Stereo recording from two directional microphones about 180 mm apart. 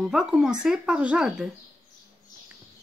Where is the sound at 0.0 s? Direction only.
Centre (ahead or behind).